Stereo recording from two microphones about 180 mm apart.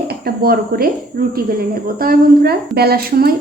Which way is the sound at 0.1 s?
55° right (ahead or behind).